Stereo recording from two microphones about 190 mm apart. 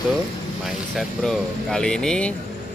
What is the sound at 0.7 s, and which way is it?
Speech, centre (ahead or behind).